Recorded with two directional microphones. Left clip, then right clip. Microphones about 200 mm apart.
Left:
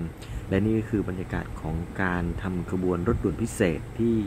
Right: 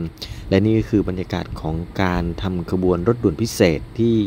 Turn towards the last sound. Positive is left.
turn(degrees=-35)  # may be behind; listen again after turning